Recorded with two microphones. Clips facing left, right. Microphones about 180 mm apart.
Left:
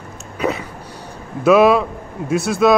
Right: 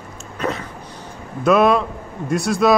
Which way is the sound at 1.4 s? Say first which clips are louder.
Left 3 dB; 5° left (ahead or behind).